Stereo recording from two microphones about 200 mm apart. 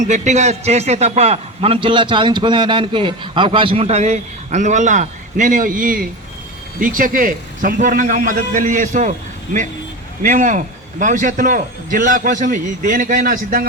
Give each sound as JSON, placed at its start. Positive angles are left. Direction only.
{"t": 0.1, "sound": "a man's voice", "side_deg": -35}